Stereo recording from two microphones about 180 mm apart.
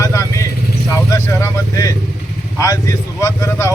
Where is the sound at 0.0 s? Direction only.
15° left (ahead or behind).